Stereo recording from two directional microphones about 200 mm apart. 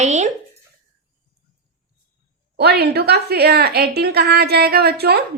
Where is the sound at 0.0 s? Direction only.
35° right (ahead or behind).